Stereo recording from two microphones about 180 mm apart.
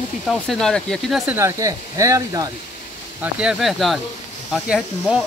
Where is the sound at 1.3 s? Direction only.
15° right (ahead or behind).